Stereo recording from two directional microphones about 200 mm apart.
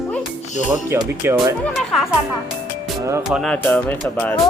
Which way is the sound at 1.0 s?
Centre (ahead or behind).